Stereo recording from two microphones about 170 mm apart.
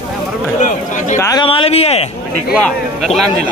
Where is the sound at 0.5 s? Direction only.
45° left (ahead or behind).